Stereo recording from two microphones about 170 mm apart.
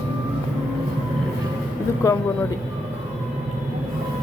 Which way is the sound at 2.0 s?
20° left (ahead or behind).